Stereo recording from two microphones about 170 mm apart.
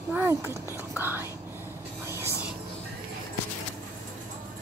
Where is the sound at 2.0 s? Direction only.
15° right (ahead or behind).